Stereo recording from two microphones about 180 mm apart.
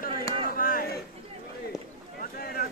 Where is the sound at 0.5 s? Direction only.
50° left (ahead or behind).